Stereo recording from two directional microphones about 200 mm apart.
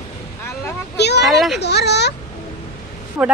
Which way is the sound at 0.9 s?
55° left (ahead or behind).